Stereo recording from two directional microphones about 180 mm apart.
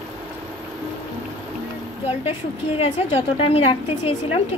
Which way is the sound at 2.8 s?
35° left (ahead or behind).